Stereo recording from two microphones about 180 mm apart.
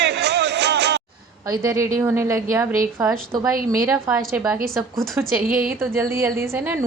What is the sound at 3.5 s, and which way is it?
Speech, 50° right (ahead or behind).